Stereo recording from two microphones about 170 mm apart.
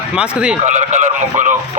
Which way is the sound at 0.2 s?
5° right (ahead or behind).